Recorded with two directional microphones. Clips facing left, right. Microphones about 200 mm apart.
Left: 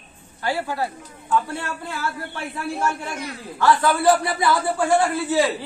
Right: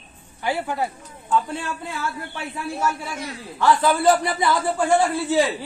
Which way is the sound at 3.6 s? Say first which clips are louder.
Even; 20° right (ahead or behind).